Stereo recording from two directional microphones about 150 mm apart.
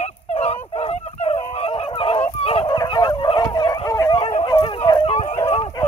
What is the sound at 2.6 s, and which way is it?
Fowl, 25° left (ahead or behind).